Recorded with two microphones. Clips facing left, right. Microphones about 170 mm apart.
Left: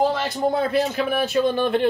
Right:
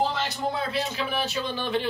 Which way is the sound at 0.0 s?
50° left (ahead or behind).